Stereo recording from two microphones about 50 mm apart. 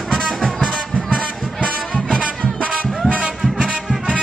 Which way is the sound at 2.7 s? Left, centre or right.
Right.